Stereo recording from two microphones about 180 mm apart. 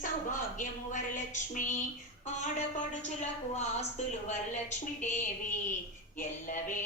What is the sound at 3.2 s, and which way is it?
A woman's voice, 40° left (ahead or behind).